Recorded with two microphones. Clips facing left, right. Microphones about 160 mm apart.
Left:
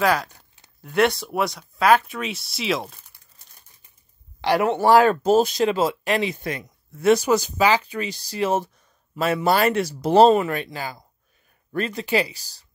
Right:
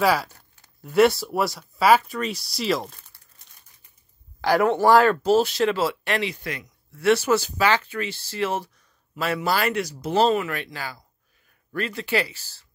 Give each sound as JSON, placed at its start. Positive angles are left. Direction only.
{"t": 0.0, "sound": "speech", "side_deg": -5}
{"t": 4.4, "sound": "a man's voice", "side_deg": 0}
{"t": 5.3, "sound": "speech", "side_deg": 15}
{"t": 10.7, "sound": "speech", "side_deg": 20}